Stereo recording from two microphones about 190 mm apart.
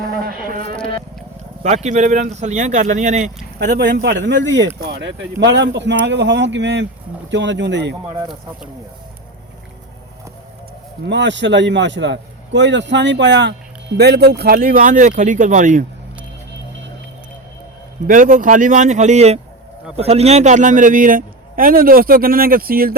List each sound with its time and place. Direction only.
0.0 s a sound: 50° right (ahead or behind)
1.6 s speech: 35° right (ahead or behind)
3.8 s speech: 60° right (ahead or behind); by 4.7 s 75° right (ahead or behind)
4.8 s speech: 60° right (ahead or behind)
11.0 s a man's voice: 70° right (ahead or behind); by 15.8 s 40° right (ahead or behind)
18.1 s a man's voice: 45° right (ahead or behind)